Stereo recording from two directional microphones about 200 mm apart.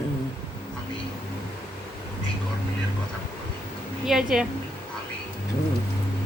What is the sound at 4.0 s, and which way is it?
Speech, centre (ahead or behind).